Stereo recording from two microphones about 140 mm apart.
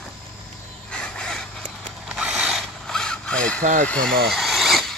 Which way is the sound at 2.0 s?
5° right (ahead or behind).